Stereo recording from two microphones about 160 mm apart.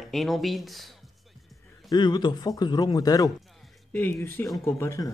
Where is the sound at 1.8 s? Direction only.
25° left (ahead or behind).